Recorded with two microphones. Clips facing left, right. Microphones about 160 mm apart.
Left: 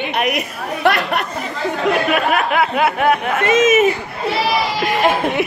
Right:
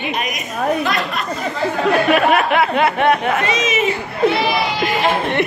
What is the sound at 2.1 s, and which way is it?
Speech, centre (ahead or behind).